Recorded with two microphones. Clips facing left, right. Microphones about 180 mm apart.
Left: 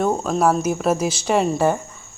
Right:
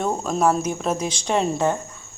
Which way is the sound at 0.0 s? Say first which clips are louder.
Left 2 dB; 5° left (ahead or behind).